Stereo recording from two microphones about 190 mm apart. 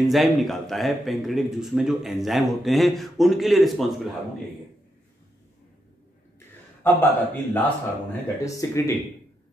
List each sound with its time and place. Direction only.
0.0 s a man's voice: centre (ahead or behind)
6.8 s a man's voice: 10° left (ahead or behind)